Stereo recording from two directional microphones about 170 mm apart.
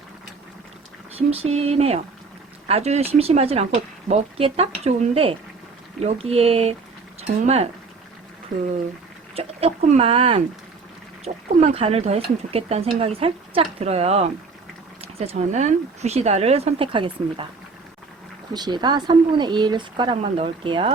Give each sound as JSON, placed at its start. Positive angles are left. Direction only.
{"t": 1.3, "sound": "speech", "side_deg": -35}
{"t": 9.3, "sound": "speech", "side_deg": -35}
{"t": 11.3, "sound": "speech", "side_deg": -45}
{"t": 18.5, "sound": "speech", "side_deg": -25}